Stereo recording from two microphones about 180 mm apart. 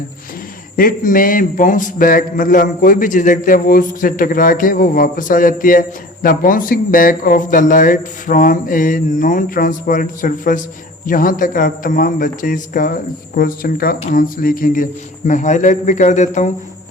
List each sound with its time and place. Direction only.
0.8 s a man's voice: 50° left (ahead or behind)